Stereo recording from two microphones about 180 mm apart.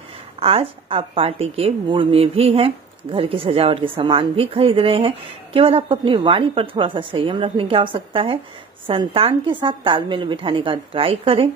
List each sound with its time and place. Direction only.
0.4 s a woman's voice: 30° right (ahead or behind)